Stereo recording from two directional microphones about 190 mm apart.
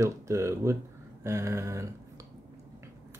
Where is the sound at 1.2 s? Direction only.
15° right (ahead or behind).